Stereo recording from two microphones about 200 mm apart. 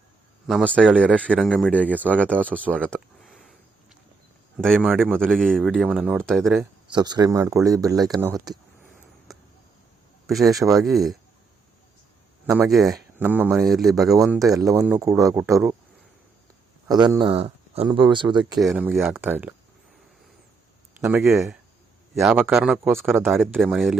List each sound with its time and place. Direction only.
0.4 s speech: 5° left (ahead or behind)
2.7 s a sound: 5° left (ahead or behind)
4.6 s speech: centre (ahead or behind)
6.9 s speech: 20° right (ahead or behind)
10.2 s speech: centre (ahead or behind)
10.6 s speech: 15° right (ahead or behind)
10.8 s speech: centre (ahead or behind)
12.6 s speech: centre (ahead or behind)
14.3 s speech: 15° right (ahead or behind)
16.9 s speech: 20° right (ahead or behind)
18.7 s speech: 10° right (ahead or behind)
21.0 s speech: 5° right (ahead or behind)